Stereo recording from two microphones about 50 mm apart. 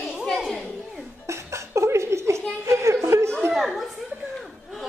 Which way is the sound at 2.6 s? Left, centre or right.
Right.